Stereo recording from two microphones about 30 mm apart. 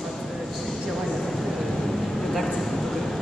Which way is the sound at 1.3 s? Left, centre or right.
Centre.